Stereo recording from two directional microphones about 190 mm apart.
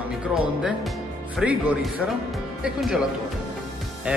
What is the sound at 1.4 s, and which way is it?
Speech, 5° right (ahead or behind).